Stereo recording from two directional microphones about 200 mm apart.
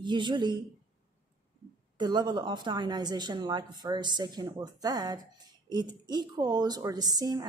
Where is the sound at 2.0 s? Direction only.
20° right (ahead or behind).